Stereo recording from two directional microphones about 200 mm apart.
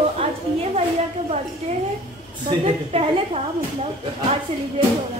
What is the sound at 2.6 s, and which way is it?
Speech, 30° right (ahead or behind).